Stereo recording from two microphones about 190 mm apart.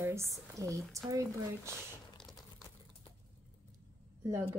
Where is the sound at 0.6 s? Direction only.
15° right (ahead or behind).